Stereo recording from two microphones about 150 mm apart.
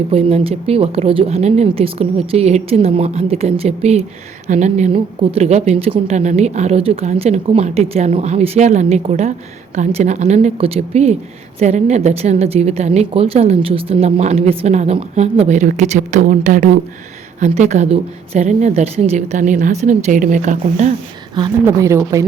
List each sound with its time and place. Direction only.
0.1 s a woman's voice: 40° right (ahead or behind)
4.9 s a woman's voice: 35° right (ahead or behind); by 16.8 s 60° right (ahead or behind)
17.4 s a woman's voice: 50° right (ahead or behind)
21.6 s speech: 20° right (ahead or behind)